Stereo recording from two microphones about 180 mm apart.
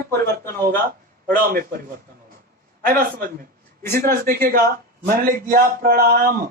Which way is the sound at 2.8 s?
55° right (ahead or behind).